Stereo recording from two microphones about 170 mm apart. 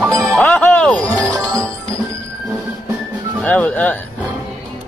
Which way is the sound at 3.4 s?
10° left (ahead or behind).